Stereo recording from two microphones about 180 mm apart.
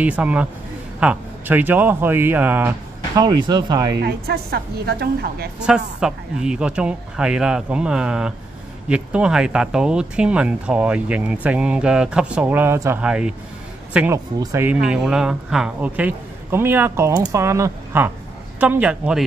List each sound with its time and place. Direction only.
0.0 s speech: 10° right (ahead or behind)
3.2 s speech: 25° right (ahead or behind)
4.0 s a woman's voice: 60° right (ahead or behind)
5.6 s speech: 5° right (ahead or behind)